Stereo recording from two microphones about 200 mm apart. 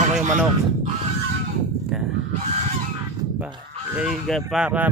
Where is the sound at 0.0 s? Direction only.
35° right (ahead or behind).